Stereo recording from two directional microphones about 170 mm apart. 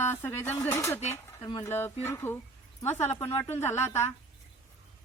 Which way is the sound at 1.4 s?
30° left (ahead or behind).